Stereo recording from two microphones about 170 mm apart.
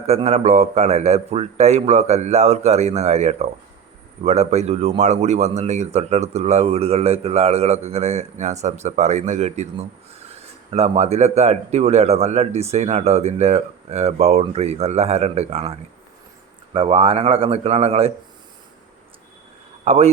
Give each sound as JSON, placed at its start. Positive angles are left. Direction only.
{"t": 0.1, "sound": "speech", "side_deg": -40}
{"t": 16.7, "sound": "speech", "side_deg": -35}
{"t": 19.8, "sound": "a man's voice", "side_deg": -40}